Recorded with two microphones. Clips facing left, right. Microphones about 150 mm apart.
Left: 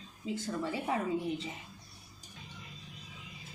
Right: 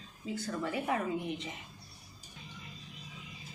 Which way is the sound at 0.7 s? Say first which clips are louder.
Right 2 dB; 25° left (ahead or behind).